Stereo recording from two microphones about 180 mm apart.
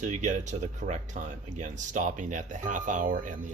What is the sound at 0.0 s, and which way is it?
Speech, 40° right (ahead or behind).